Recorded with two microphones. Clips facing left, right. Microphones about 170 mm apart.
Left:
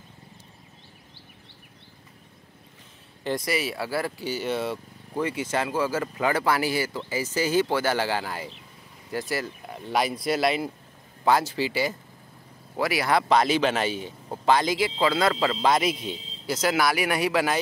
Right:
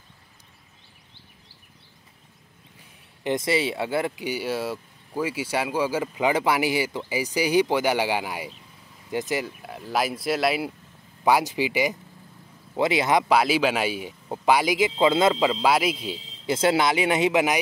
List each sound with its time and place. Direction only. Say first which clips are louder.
3.3 s speech: right 3 dB; 25° right (ahead or behind)
9.7 s speech: left 1 dB; centre (ahead or behind)
11.2 s speech: right 1 dB; 15° right (ahead or behind)
13.3 s speech: right 1 dB; 5° right (ahead or behind); by 15.3 s 20° right (ahead or behind)
15.3 s speech: right 1 dB; 10° right (ahead or behind)
16.4 s speech: right 3 dB; 25° right (ahead or behind)